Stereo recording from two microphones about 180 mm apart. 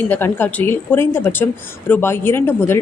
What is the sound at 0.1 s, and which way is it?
A woman's voice, 10° left (ahead or behind).